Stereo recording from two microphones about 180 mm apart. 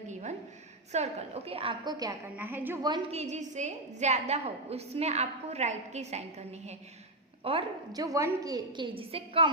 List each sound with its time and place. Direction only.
0.1 s a sound: 40° right (ahead or behind)
0.9 s a woman's voice: 35° right (ahead or behind)
2.3 s a woman's voice: 10° right (ahead or behind)
3.1 s a woman's voice: 40° right (ahead or behind)
8.0 s a woman's voice: 20° right (ahead or behind)